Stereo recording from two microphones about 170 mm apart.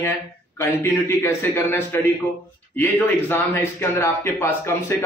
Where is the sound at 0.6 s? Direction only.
15° left (ahead or behind).